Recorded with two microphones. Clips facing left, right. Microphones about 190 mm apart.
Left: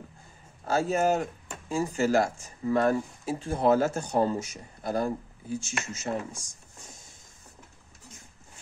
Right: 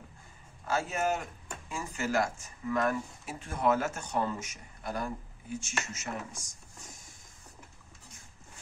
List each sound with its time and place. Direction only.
0.7 s speech: 35° left (ahead or behind)